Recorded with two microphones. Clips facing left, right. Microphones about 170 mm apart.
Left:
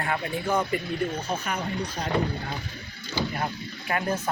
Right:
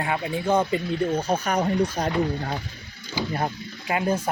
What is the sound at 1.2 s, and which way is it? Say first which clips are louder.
Speech: right 7 dB; 40° right (ahead or behind).